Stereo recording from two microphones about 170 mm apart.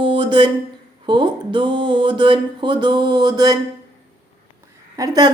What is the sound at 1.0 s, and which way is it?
A woman's voice, 25° right (ahead or behind).